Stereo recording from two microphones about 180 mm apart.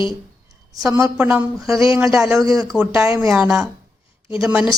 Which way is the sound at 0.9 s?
10° right (ahead or behind).